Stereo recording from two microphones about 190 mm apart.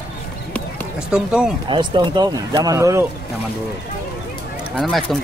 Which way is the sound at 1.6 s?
25° right (ahead or behind).